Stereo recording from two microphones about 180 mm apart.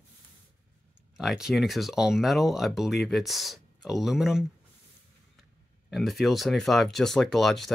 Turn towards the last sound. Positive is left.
turn(degrees=0)  # may be behind; listen again after turning